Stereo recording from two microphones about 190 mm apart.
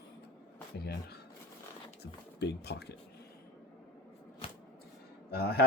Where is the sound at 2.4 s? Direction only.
60° left (ahead or behind).